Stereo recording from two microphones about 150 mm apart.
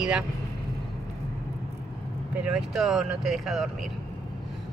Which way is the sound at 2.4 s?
5° right (ahead or behind).